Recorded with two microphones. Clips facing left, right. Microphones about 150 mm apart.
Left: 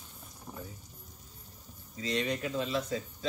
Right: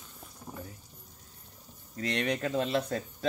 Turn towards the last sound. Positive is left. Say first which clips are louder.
# right 3 dB
turn(degrees=-60)  # may be behind; listen again after turning